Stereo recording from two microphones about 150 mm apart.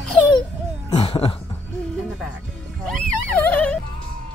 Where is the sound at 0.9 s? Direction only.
40° left (ahead or behind).